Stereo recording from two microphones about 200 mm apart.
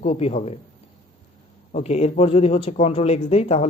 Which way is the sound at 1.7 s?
30° left (ahead or behind).